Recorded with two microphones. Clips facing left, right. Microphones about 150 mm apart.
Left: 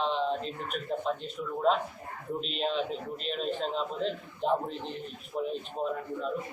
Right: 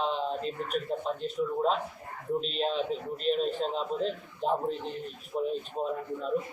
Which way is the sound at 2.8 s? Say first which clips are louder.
Right 1 dB; 40° right (ahead or behind).